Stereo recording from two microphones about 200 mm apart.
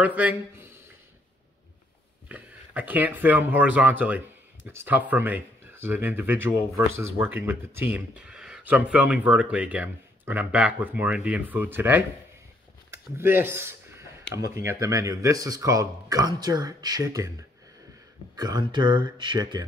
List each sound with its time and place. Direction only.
0.0 s speech: 5° right (ahead or behind)
2.2 s speech: 10° right (ahead or behind)
12.9 s a sound: 10° right (ahead or behind)
14.5 s speech: 15° right (ahead or behind)